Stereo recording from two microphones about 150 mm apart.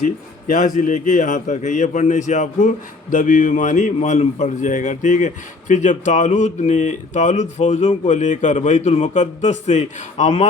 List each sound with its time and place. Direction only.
0.0 s a man's voice: 60° left (ahead or behind)